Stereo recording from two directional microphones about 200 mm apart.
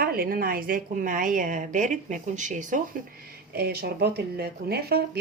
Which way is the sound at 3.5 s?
50° right (ahead or behind).